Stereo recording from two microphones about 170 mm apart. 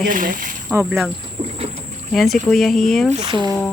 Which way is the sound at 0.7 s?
15° right (ahead or behind).